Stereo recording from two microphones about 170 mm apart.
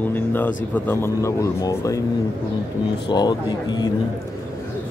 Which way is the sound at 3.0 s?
25° left (ahead or behind).